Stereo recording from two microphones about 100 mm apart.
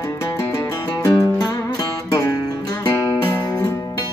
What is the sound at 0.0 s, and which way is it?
Music, 30° left (ahead or behind).